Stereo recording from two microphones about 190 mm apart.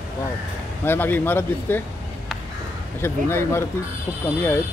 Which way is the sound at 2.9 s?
10° left (ahead or behind).